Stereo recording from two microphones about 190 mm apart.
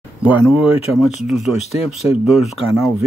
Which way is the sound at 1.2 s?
Centre (ahead or behind).